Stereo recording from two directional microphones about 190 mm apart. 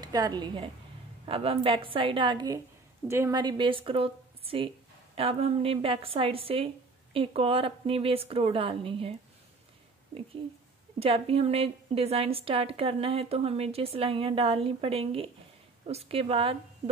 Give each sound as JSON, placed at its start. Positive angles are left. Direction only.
{"t": 0.0, "sound": "speech", "side_deg": -20}
{"t": 11.0, "sound": "a woman's voice", "side_deg": -30}